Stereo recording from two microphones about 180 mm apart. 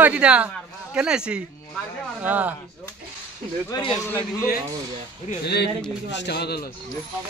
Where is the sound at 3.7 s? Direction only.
30° left (ahead or behind).